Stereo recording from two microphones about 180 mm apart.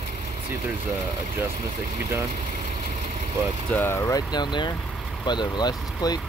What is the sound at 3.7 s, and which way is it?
Speech, 15° left (ahead or behind).